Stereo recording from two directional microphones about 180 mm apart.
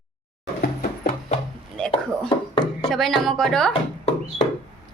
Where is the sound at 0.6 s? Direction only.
60° left (ahead or behind).